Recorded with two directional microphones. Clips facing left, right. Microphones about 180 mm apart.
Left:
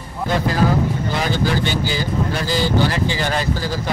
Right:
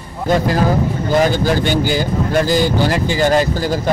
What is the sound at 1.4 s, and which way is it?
A man's voice, 50° right (ahead or behind).